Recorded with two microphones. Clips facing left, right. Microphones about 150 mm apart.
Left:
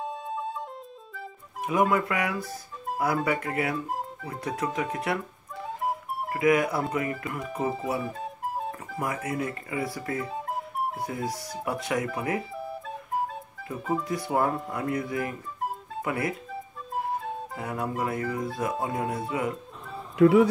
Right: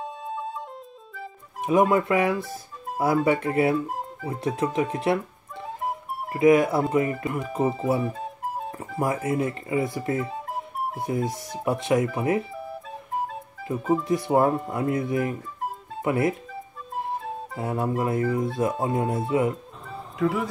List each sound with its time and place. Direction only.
0.0 s music: centre (ahead or behind)
1.6 s speech: 25° right (ahead or behind)
6.3 s speech: 25° right (ahead or behind)
8.0 s music: centre (ahead or behind)
8.7 s speech: 25° right (ahead or behind)
10.2 s music: centre (ahead or behind)
11.0 s speech: 25° right (ahead or behind)
12.5 s flute: centre (ahead or behind)
13.7 s speech: 20° right (ahead or behind)
17.6 s speech: 25° right (ahead or behind)
20.2 s speech: 70° left (ahead or behind)